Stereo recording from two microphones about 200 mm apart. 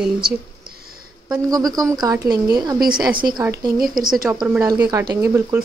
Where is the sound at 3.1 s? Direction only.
45° right (ahead or behind).